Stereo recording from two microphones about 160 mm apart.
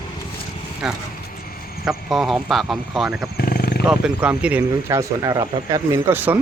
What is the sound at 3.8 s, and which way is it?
Speech, 5° right (ahead or behind).